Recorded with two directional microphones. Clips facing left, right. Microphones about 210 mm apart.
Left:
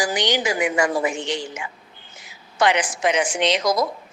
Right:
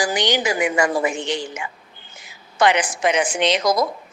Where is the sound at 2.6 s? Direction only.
55° right (ahead or behind).